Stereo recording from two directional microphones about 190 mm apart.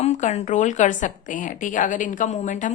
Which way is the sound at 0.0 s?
35° left (ahead or behind).